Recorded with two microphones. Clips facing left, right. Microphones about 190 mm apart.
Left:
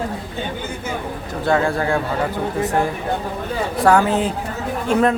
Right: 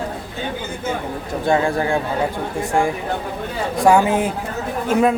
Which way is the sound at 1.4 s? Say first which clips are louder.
Even; 20° right (ahead or behind).